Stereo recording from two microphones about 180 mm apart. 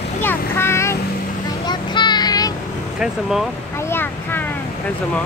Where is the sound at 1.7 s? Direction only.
25° left (ahead or behind).